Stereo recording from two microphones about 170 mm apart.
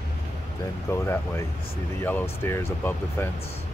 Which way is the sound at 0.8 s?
15° left (ahead or behind).